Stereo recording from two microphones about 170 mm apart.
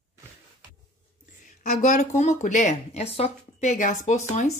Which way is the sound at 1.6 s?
50° left (ahead or behind).